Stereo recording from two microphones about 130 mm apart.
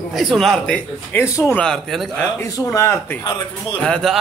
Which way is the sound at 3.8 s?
5° left (ahead or behind).